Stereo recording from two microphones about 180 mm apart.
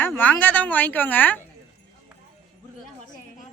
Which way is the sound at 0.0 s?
10° left (ahead or behind).